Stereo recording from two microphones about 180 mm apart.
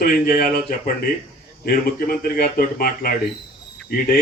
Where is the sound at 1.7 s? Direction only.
55° left (ahead or behind).